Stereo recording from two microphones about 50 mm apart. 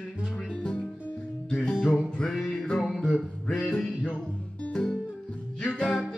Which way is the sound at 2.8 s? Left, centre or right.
Centre.